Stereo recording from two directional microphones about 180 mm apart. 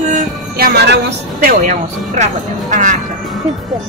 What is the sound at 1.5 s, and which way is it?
Speech, 45° right (ahead or behind).